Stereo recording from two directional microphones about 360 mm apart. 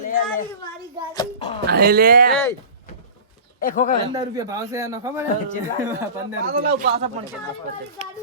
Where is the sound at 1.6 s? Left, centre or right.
Right.